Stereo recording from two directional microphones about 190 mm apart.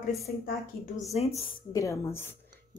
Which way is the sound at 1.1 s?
35° left (ahead or behind).